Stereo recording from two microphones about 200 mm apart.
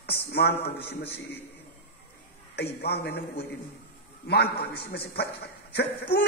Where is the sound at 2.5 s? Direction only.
55° left (ahead or behind).